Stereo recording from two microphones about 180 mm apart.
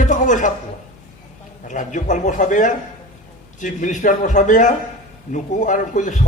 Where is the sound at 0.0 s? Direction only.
45° left (ahead or behind).